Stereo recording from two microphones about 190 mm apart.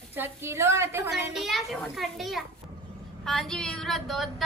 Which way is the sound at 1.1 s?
Centre (ahead or behind).